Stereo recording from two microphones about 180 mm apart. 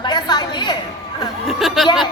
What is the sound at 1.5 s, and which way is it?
Speech, centre (ahead or behind).